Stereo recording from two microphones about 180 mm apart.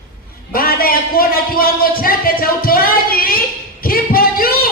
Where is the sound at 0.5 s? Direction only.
55° left (ahead or behind).